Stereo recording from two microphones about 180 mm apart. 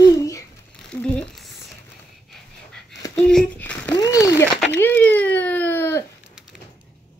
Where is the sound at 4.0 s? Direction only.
20° left (ahead or behind).